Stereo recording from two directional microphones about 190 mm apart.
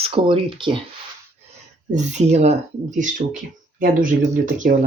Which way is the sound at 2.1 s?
35° right (ahead or behind).